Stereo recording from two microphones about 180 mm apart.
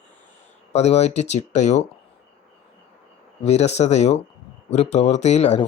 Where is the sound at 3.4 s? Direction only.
35° left (ahead or behind).